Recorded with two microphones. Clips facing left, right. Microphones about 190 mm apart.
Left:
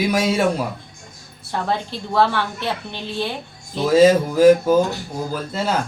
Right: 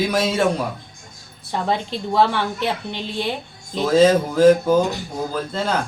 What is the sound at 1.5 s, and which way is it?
A woman's voice, 15° right (ahead or behind).